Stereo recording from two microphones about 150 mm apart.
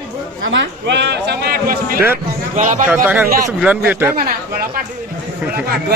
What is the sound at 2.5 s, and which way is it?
Speech, 55° right (ahead or behind).